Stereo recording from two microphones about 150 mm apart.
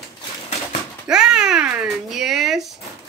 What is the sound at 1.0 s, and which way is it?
Babbling, 5° right (ahead or behind).